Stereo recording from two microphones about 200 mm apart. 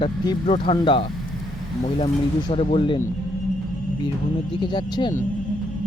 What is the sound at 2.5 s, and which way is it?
Speech, 30° left (ahead or behind).